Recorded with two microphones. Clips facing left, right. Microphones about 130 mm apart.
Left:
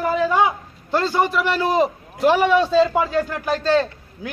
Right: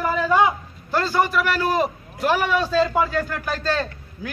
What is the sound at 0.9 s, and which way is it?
A man's voice, 25° left (ahead or behind).